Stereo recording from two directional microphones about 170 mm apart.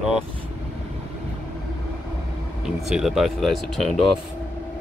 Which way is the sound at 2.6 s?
Centre (ahead or behind).